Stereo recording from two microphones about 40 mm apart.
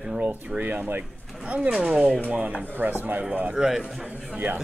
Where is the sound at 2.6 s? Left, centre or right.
Right.